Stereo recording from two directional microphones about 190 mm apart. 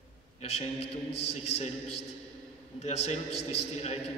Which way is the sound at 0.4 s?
35° left (ahead or behind).